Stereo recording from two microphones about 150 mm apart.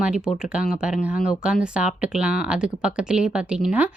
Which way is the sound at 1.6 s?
5° right (ahead or behind).